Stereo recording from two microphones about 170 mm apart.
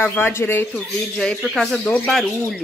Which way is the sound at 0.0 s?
15° left (ahead or behind).